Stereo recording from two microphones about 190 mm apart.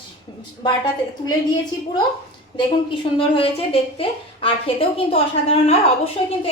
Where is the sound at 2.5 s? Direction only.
25° left (ahead or behind).